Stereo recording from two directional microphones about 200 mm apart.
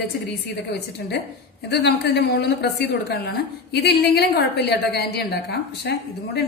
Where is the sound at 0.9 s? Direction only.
55° left (ahead or behind).